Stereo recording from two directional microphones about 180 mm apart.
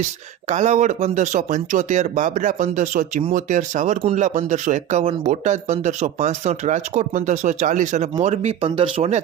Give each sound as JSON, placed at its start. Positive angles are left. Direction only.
{"t": 0.4, "sound": "speech", "side_deg": -40}